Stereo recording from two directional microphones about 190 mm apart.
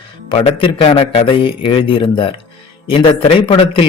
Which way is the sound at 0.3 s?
30° left (ahead or behind).